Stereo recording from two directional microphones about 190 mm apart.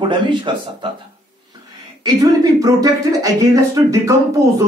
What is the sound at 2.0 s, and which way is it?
A man's voice, 15° right (ahead or behind).